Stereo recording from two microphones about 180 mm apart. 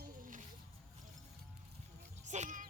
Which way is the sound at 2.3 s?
40° right (ahead or behind).